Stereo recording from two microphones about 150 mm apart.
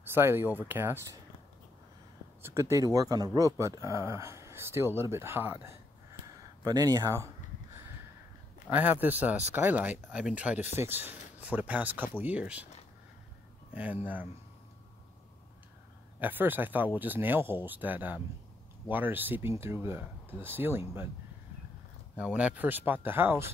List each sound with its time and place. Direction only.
0.1 s speech: 15° right (ahead or behind)
2.4 s speech: 20° right (ahead or behind)
6.2 s a sound: 25° right (ahead or behind)
8.6 s speech: 10° right (ahead or behind)
13.7 s speech: 10° right (ahead or behind)
16.2 s speech: 10° right (ahead or behind)
22.1 s speech: 10° right (ahead or behind)